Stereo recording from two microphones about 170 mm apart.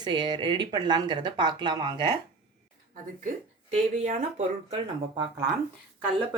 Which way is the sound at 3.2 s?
45° right (ahead or behind).